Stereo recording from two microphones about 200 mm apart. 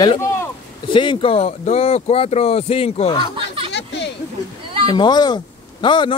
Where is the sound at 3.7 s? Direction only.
60° left (ahead or behind).